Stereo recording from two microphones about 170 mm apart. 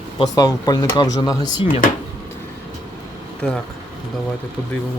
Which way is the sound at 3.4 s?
10° left (ahead or behind).